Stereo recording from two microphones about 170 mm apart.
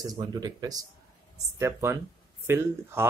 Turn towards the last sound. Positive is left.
turn(degrees=-15)  # may be behind; listen again after turning